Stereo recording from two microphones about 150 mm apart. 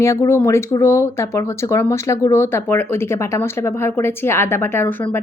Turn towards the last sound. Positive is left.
turn(degrees=15)  # may be behind; listen again after turning